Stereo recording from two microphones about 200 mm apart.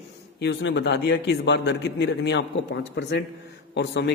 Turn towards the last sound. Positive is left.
turn(degrees=60)  # may be behind; listen again after turning